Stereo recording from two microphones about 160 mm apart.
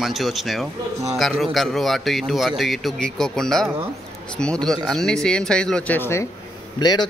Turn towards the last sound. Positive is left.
turn(degrees=25)  # may be behind; listen again after turning